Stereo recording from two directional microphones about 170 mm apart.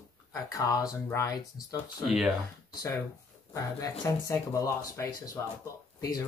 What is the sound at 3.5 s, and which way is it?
Speech, 20° left (ahead or behind).